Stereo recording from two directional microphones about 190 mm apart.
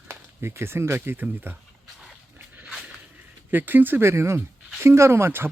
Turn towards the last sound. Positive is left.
turn(degrees=-10)  # may be behind; listen again after turning